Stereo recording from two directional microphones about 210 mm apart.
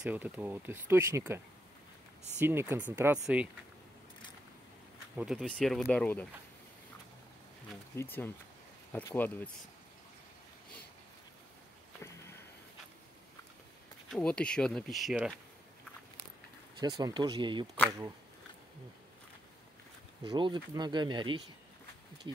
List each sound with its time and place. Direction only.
0.0 s speech: 5° right (ahead or behind)
2.4 s speech: 10° right (ahead or behind)
5.1 s speech: 5° right (ahead or behind)
7.9 s speech: 10° left (ahead or behind)
14.0 s speech: 5° left (ahead or behind)
16.8 s speech: 20° right (ahead or behind)
20.2 s speech: 25° right (ahead or behind)